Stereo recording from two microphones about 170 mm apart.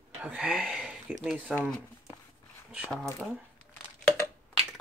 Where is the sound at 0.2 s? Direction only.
10° right (ahead or behind).